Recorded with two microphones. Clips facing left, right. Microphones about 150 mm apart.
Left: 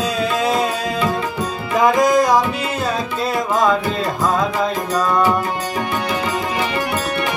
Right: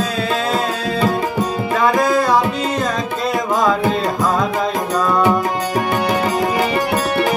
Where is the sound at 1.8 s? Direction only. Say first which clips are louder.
Left 2 dB; 15° left (ahead or behind).